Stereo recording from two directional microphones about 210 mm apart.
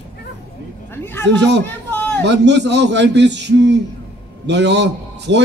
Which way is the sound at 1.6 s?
10° left (ahead or behind).